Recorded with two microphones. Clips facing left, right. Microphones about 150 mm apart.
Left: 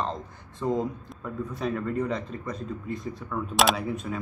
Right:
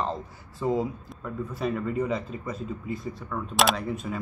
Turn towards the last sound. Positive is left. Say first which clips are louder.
# even
turn(degrees=0)  # may be behind; listen again after turning